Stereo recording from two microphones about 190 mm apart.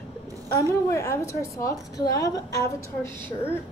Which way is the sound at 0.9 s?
15° left (ahead or behind).